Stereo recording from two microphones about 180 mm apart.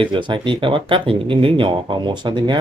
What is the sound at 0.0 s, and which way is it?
Speech, 25° right (ahead or behind).